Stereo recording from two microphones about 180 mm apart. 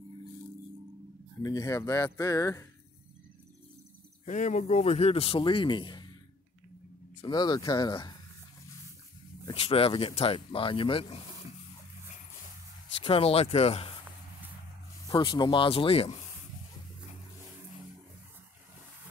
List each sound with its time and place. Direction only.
1.4 s speech: 20° left (ahead or behind)
4.3 s speech: 45° left (ahead or behind); by 6.0 s 25° left (ahead or behind)
7.2 s speech: 25° left (ahead or behind)
9.5 s speech: 35° left (ahead or behind)
13.0 s speech: 30° left (ahead or behind)
15.0 s speech: 25° left (ahead or behind)